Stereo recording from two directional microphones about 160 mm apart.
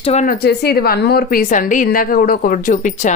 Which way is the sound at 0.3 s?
80° left.